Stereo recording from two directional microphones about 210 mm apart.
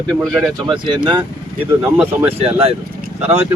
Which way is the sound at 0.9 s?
25° right (ahead or behind).